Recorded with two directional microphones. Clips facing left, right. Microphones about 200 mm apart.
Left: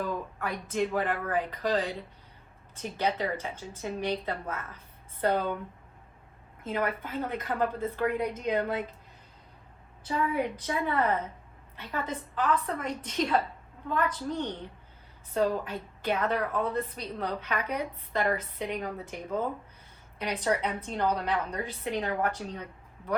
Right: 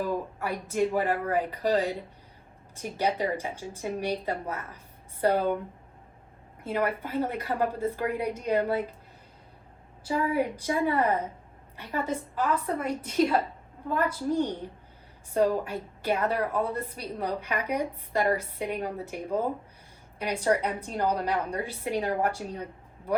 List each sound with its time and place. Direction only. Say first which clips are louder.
0.0 s speech: right 3 dB; 10° right (ahead or behind)
7.1 s speech: right 4 dB; 35° right (ahead or behind)
7.4 s speech: right 2 dB; 10° right (ahead or behind)
10.2 s a woman's voice: right 2 dB; 30° right (ahead or behind)
10.8 s speech: right 1 dB; 10° right (ahead or behind)